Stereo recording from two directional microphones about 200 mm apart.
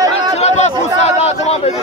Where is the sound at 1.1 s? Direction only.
30° left (ahead or behind).